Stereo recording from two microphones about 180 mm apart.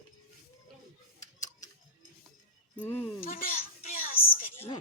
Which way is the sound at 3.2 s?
50° left (ahead or behind).